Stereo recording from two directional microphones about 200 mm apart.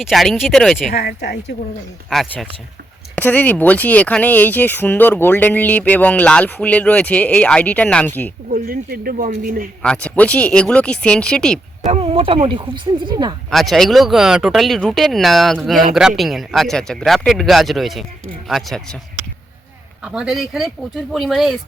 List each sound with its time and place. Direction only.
0.0 s speech: centre (ahead or behind)
0.9 s speech: 55° left (ahead or behind)
2.0 s speech: centre (ahead or behind)
8.4 s speech: 45° right (ahead or behind)
9.8 s speech: 5° left (ahead or behind)
11.9 s speech: 30° right (ahead or behind)
13.5 s speech: centre (ahead or behind)
20.0 s speech: 5° right (ahead or behind)